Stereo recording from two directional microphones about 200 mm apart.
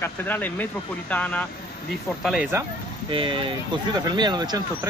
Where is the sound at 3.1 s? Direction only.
25° right (ahead or behind).